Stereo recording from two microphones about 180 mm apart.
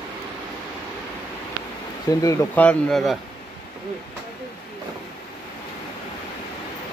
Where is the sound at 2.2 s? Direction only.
15° left (ahead or behind).